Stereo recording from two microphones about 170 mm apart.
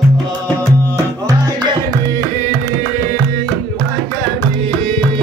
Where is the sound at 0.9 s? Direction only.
20° right (ahead or behind).